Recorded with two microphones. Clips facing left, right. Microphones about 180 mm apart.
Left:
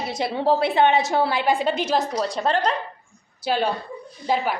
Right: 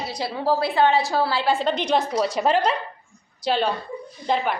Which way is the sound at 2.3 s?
5° right (ahead or behind).